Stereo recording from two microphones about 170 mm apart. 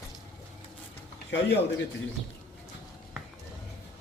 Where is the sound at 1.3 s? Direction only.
90° left.